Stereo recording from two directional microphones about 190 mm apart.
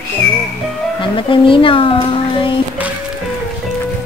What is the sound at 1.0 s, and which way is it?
Speech, 25° left (ahead or behind).